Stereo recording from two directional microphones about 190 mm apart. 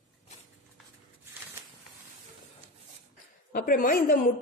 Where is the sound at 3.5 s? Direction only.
45° left (ahead or behind).